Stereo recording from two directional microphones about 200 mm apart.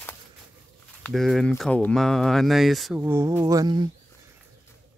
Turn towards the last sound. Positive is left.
turn(degrees=-20)  # may be behind; listen again after turning